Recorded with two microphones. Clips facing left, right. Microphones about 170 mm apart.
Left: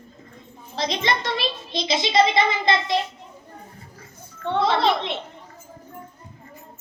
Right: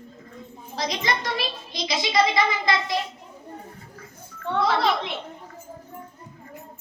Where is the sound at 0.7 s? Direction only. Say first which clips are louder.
Left 2 dB; 25° left (ahead or behind).